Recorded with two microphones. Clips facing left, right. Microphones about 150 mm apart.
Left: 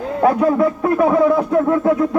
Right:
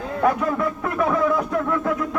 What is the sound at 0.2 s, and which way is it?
A man's voice, 30° left (ahead or behind).